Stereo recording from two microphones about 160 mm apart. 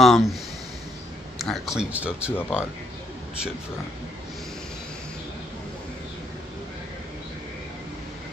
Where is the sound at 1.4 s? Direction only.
Centre (ahead or behind).